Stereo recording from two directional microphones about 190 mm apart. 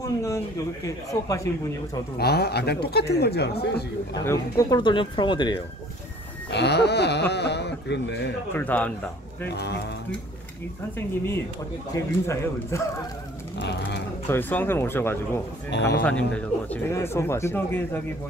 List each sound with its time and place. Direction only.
0.0 s speech: 15° left (ahead or behind)
2.1 s speech: 55° left (ahead or behind)
4.1 s speech: 20° left (ahead or behind)
6.5 s speech: 60° left (ahead or behind)
8.5 s speech: 10° left (ahead or behind)
9.5 s speech: 60° left (ahead or behind)
11.9 s speech: 15° left (ahead or behind)
13.6 s vehicle: 60° left (ahead or behind)
14.3 s speech: 10° left (ahead or behind)